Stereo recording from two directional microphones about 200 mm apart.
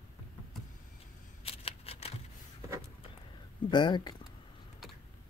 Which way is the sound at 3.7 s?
20° left (ahead or behind).